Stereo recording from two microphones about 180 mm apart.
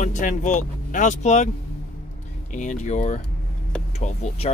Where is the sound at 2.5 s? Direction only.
40° left (ahead or behind).